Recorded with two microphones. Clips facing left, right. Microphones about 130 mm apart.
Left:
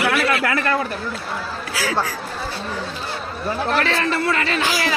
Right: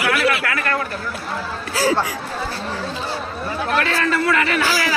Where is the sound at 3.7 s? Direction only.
30° left (ahead or behind).